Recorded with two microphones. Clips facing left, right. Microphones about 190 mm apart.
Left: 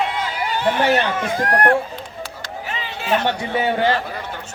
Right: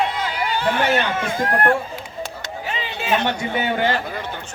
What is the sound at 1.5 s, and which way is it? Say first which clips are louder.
Speech: left 2 dB; 70° left (ahead or behind).